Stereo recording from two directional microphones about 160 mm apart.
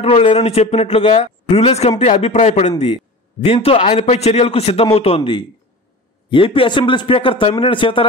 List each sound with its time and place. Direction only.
0.0 s a man's voice: 40° left (ahead or behind)